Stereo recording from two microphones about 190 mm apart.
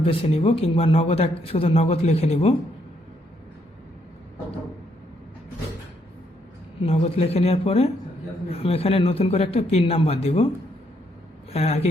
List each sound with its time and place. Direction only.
0.0 s a man's voice: 30° left (ahead or behind)
6.8 s a man's voice: 35° left (ahead or behind)
11.5 s a man's voice: 35° left (ahead or behind)